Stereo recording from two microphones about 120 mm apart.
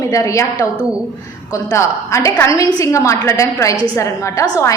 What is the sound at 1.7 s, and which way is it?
A woman's voice, 25° left (ahead or behind).